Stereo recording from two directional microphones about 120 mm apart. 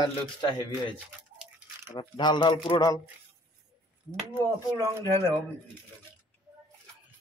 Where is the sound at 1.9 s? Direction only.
40° left (ahead or behind).